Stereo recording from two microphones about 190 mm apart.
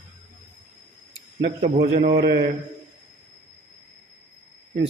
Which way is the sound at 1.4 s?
45° right (ahead or behind).